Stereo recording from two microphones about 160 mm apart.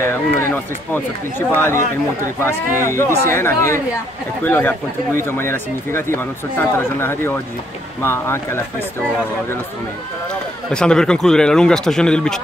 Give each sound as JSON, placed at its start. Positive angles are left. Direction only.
{"t": 0.0, "sound": "speech", "side_deg": 15}
{"t": 10.7, "sound": "speech", "side_deg": 5}